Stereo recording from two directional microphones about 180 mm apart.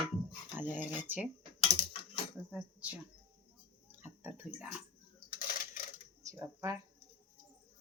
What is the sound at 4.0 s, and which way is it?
Speech, 10° right (ahead or behind).